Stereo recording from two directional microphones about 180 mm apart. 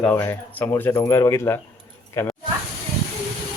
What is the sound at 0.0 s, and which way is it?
Speech, 15° left (ahead or behind).